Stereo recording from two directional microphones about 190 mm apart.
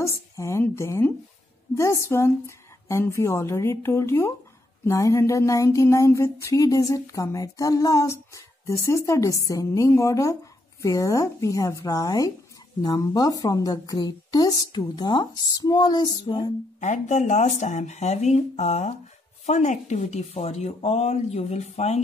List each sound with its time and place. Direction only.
0.4 s a sound: 15° left (ahead or behind)
12.8 s a woman's voice: 20° left (ahead or behind)
16.8 s speech: 40° left (ahead or behind)